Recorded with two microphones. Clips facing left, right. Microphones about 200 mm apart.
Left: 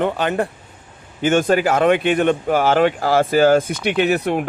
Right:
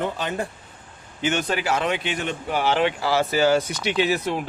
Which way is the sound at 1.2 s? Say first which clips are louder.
Left 8 dB; 50° left (ahead or behind).